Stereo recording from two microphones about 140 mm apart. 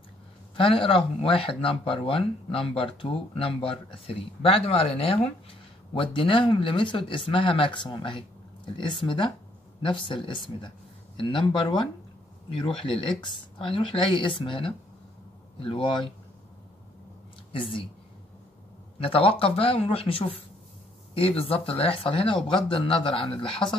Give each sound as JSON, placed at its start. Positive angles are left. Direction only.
{"t": 0.6, "sound": "speech", "side_deg": 40}
{"t": 18.9, "sound": "speech", "side_deg": 40}